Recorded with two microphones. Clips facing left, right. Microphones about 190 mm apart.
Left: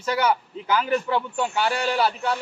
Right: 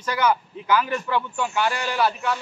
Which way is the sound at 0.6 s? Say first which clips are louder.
Even; 30° left (ahead or behind).